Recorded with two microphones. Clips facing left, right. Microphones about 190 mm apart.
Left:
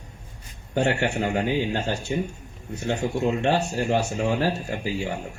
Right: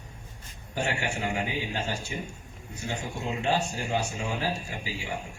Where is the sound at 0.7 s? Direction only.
60° left (ahead or behind).